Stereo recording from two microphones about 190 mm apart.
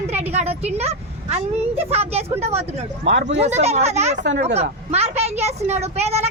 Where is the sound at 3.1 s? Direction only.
70° right (ahead or behind).